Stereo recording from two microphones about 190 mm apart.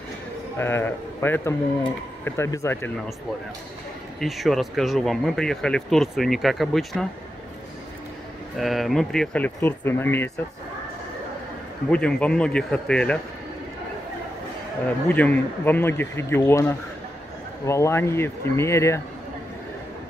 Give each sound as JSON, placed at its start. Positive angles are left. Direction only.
{"t": 0.6, "sound": "speech", "side_deg": 10}
{"t": 4.2, "sound": "speech", "side_deg": 0}
{"t": 8.5, "sound": "speech", "side_deg": 0}
{"t": 11.9, "sound": "speech", "side_deg": 5}
{"t": 15.0, "sound": "speech", "side_deg": 10}